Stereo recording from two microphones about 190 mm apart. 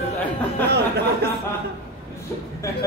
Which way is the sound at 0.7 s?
60° right (ahead or behind).